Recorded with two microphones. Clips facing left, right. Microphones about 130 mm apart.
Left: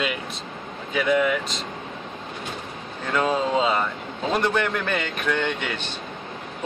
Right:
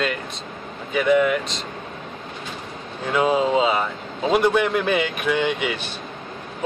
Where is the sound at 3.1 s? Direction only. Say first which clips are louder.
Right 3 dB; 10° right (ahead or behind).